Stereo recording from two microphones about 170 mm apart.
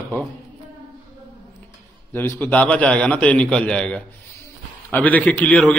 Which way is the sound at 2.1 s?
10° left (ahead or behind).